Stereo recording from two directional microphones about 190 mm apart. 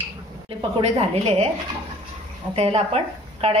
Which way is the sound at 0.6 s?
30° right (ahead or behind).